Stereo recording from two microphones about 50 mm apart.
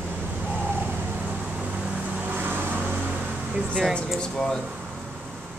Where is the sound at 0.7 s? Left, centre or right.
Right.